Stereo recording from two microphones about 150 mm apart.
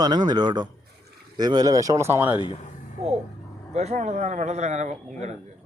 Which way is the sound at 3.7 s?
50° right (ahead or behind).